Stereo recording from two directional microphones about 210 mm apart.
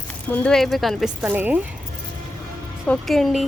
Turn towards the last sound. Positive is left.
turn(degrees=0)  # may be behind; listen again after turning